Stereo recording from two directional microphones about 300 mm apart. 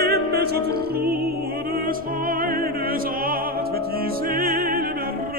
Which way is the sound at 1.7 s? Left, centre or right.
Right.